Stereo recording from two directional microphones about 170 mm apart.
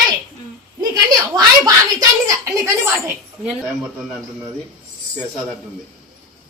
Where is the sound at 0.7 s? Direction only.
20° right (ahead or behind).